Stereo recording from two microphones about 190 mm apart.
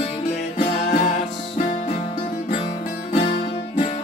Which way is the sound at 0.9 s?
45° left (ahead or behind).